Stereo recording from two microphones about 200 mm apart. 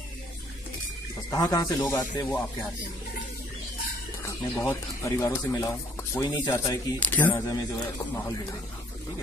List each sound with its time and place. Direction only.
1.3 s speech: 15° left (ahead or behind)
4.2 s speech: 15° left (ahead or behind)